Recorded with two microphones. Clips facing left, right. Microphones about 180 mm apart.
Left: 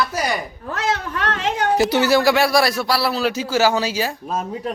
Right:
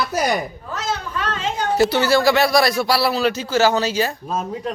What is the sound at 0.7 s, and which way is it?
Speech, 80° left.